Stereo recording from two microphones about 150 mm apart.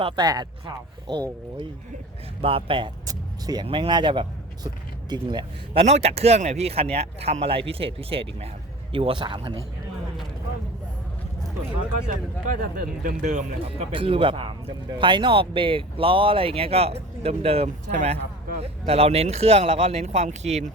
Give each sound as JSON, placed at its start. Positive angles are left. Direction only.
{"t": 0.2, "sound": "speech", "side_deg": -25}
{"t": 2.4, "sound": "speech", "side_deg": -40}
{"t": 5.8, "sound": "speech", "side_deg": -45}
{"t": 12.5, "sound": "speech", "side_deg": -65}
{"t": 13.7, "sound": "speech", "side_deg": -35}